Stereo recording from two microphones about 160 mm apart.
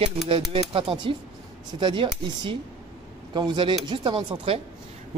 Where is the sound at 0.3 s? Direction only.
35° right (ahead or behind).